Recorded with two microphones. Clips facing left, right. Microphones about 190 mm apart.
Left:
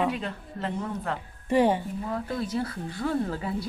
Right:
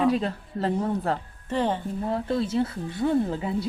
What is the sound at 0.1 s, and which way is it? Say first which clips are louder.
A woman's voice: right 7 dB; 35° right (ahead or behind).